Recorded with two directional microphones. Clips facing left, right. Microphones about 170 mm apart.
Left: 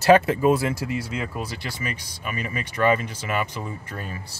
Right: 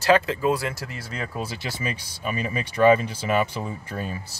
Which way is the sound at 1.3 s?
25° right (ahead or behind).